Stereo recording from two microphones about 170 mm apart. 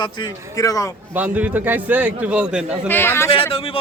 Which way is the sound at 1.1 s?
10° right (ahead or behind).